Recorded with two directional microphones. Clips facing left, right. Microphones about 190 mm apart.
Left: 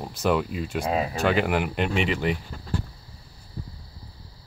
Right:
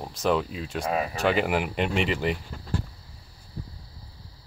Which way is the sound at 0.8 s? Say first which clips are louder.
Left 1 dB; 20° left (ahead or behind).